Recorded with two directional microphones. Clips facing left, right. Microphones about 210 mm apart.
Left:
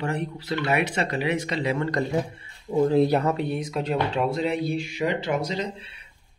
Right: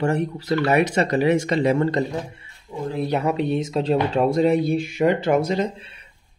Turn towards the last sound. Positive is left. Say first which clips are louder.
# right 7 dB
turn(degrees=-50)  # may be behind; listen again after turning